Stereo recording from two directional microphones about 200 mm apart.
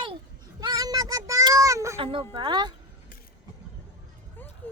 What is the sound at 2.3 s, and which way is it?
Speech, 25° right (ahead or behind).